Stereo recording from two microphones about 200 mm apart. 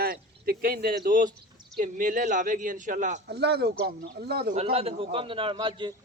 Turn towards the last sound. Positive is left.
turn(degrees=-20)  # may be behind; listen again after turning